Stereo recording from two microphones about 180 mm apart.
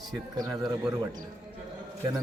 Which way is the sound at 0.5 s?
20° right (ahead or behind).